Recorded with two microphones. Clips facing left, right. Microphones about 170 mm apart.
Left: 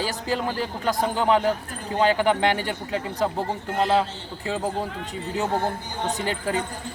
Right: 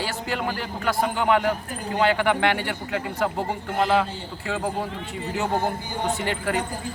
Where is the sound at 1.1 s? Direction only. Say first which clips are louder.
Left 1 dB; 30° left (ahead or behind).